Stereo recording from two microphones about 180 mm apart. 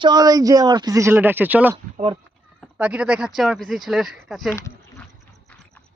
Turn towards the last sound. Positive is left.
turn(degrees=15)  # may be behind; listen again after turning